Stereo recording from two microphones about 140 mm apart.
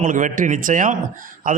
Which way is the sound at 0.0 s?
70° right (ahead or behind).